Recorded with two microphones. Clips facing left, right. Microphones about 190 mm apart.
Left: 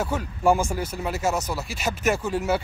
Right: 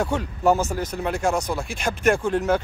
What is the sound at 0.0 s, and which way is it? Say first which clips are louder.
Speech: right 1 dB; 5° left (ahead or behind).